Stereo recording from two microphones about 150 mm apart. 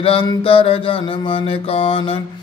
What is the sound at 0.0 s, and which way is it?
Mantra, 40° left (ahead or behind).